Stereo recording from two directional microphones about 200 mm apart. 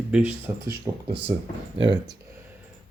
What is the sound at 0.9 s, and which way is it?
Speech, 20° right (ahead or behind).